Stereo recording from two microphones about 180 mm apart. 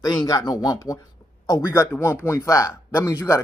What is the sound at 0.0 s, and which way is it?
Speech, 20° left (ahead or behind).